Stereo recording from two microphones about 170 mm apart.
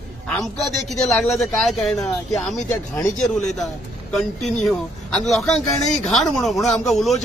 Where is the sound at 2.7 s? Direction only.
15° left (ahead or behind).